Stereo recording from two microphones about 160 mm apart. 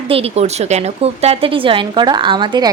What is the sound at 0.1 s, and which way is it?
A woman's voice, 40° right (ahead or behind).